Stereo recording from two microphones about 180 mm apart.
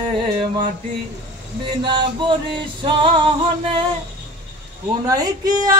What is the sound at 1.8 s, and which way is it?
Music, 25° right (ahead or behind).